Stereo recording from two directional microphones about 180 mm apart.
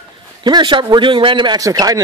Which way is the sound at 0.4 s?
25° right (ahead or behind).